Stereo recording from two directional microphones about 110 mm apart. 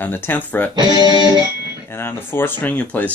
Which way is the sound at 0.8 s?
40° right (ahead or behind).